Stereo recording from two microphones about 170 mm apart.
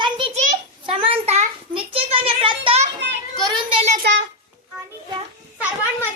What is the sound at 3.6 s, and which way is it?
Child singing, 30° right (ahead or behind).